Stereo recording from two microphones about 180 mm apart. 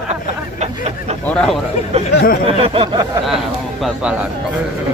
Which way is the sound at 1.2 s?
5° left (ahead or behind).